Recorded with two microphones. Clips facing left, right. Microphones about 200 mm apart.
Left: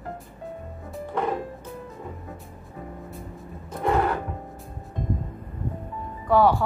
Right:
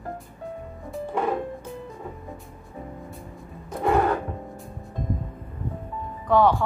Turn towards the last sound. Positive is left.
turn(degrees=5)  # may be behind; listen again after turning